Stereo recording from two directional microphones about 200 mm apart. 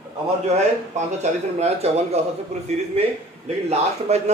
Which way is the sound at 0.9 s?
35° right (ahead or behind).